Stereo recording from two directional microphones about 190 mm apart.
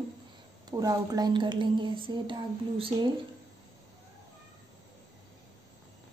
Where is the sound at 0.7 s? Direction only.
20° right (ahead or behind).